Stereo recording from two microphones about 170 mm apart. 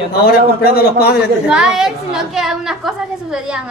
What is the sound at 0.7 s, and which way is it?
Speech, 65° left (ahead or behind).